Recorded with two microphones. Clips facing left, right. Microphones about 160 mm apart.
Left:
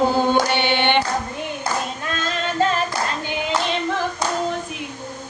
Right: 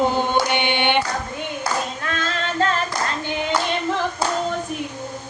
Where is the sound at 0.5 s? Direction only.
15° right (ahead or behind).